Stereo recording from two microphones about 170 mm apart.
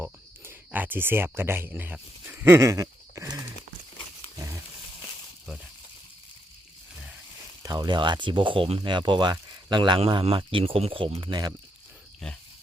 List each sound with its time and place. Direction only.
0.0 s speech: 10° right (ahead or behind)
2.4 s a sound: 15° right (ahead or behind)
7.6 s speech: 20° right (ahead or behind)